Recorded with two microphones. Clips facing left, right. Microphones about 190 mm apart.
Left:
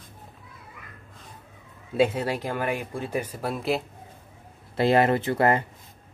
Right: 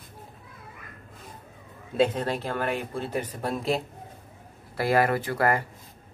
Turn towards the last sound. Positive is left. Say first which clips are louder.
# left 3 dB
turn(degrees=25)  # may be behind; listen again after turning